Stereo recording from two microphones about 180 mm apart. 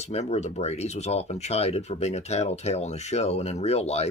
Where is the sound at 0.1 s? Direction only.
40° left (ahead or behind).